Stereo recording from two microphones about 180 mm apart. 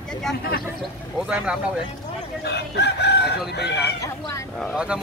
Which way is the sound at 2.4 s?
65° left (ahead or behind).